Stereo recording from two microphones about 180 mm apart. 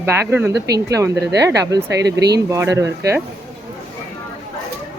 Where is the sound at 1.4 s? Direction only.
15° right (ahead or behind).